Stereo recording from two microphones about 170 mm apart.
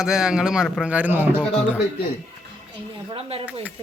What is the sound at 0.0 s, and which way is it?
Speech, 5° right (ahead or behind).